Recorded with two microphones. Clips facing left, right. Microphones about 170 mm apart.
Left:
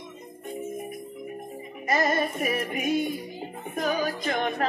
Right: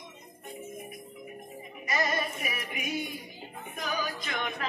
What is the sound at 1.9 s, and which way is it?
Music, 45° left (ahead or behind).